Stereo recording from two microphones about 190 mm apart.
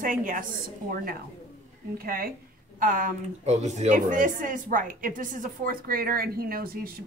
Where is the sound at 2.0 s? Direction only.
50° right (ahead or behind).